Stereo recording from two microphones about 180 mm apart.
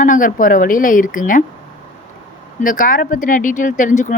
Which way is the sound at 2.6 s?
50° left (ahead or behind).